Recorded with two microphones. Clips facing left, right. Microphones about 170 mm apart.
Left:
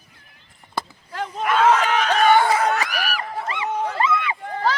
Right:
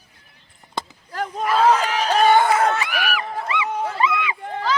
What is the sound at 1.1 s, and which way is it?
Speech, 35° right (ahead or behind).